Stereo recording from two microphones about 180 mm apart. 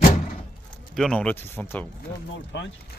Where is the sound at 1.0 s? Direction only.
5° left (ahead or behind).